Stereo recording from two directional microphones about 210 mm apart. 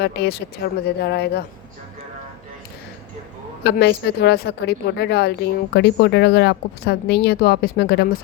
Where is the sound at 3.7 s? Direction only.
50° left (ahead or behind).